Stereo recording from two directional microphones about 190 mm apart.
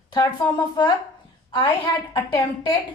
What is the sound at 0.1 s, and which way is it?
A woman's voice, 20° left (ahead or behind).